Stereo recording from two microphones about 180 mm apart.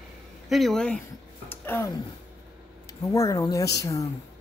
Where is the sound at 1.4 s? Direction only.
10° left (ahead or behind).